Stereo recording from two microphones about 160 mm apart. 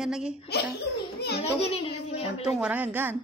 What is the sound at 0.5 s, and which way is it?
Speech, 90° left.